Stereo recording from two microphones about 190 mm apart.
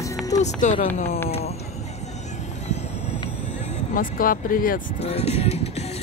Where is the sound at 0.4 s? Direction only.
40° left (ahead or behind).